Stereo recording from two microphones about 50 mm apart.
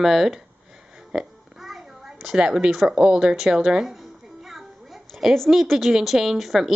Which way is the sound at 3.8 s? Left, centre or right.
Centre.